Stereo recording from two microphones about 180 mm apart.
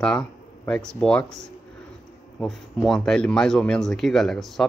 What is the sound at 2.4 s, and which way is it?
Speech, centre (ahead or behind).